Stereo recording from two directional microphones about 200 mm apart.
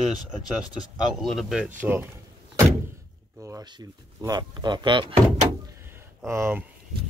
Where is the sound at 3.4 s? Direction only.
15° right (ahead or behind).